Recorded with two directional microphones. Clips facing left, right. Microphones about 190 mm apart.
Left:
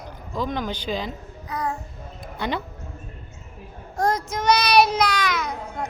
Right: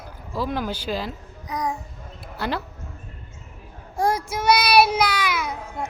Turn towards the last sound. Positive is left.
turn(degrees=-10)  # may be behind; listen again after turning